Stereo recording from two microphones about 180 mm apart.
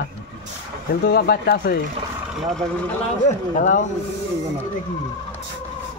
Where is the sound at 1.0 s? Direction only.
60° left (ahead or behind).